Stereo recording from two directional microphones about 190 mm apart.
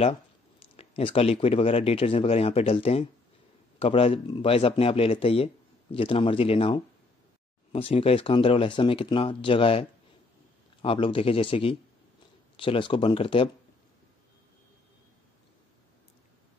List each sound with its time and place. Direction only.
0.7 s speech: 30° left (ahead or behind)